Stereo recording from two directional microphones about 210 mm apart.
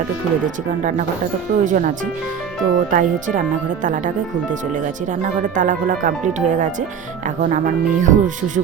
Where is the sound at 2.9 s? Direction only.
40° right (ahead or behind).